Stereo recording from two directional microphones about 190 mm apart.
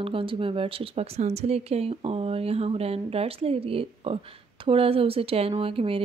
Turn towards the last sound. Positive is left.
turn(degrees=-30)  # may be behind; listen again after turning